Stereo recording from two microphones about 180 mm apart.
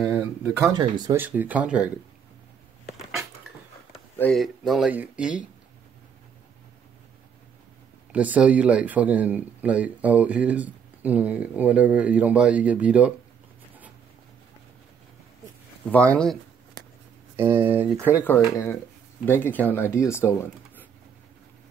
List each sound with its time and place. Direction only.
0.0 s speech: 10° right (ahead or behind)
1.1 s speech: 10° right (ahead or behind)
4.2 s speech: centre (ahead or behind)
8.1 s speech: 5° right (ahead or behind)
15.9 s speech: 5° left (ahead or behind)
17.4 s speech: 10° right (ahead or behind)
18.0 s speech: 10° left (ahead or behind)